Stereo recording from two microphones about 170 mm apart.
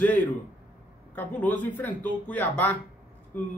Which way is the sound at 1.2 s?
10° left (ahead or behind).